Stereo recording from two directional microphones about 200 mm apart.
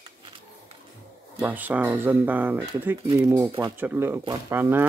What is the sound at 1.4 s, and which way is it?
Speech, 10° right (ahead or behind).